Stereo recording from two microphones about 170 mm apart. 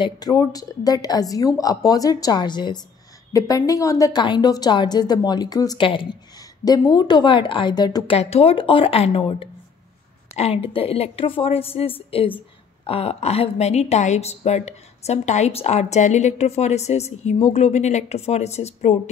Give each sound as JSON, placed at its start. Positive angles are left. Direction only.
{"t": 0.0, "sound": "a woman's voice", "side_deg": 20}
{"t": 8.2, "sound": "a woman's voice", "side_deg": 35}